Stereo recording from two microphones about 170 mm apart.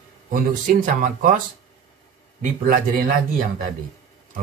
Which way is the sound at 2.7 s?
55° right (ahead or behind).